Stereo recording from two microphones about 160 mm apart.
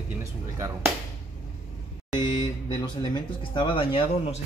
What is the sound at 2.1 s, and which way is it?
Speech, 25° left (ahead or behind).